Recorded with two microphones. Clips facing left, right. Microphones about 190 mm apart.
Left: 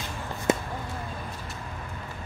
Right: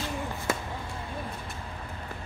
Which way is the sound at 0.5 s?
20° left (ahead or behind).